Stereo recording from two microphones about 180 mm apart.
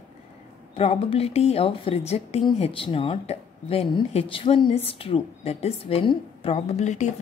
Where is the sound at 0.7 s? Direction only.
30° left (ahead or behind).